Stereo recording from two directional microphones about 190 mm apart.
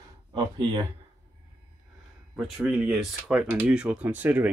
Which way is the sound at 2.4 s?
5° right (ahead or behind).